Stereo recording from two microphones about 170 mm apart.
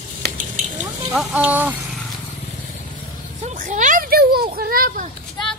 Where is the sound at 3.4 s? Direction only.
45° right (ahead or behind).